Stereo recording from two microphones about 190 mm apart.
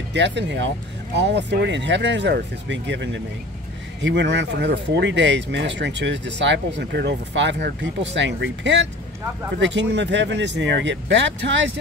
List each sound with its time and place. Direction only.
0.1 s speech: 65° right (ahead or behind)